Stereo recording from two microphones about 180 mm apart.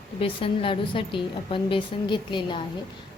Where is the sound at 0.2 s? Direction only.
30° left (ahead or behind).